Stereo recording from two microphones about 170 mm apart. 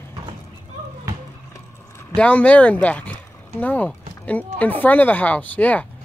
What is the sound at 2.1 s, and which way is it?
Speech, 5° left (ahead or behind).